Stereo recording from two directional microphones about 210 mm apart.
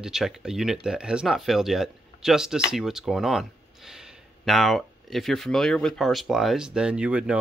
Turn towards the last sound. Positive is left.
turn(degrees=-5)  # may be behind; listen again after turning